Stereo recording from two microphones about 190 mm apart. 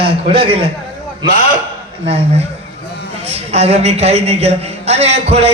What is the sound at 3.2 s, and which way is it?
Speech, 35° right (ahead or behind).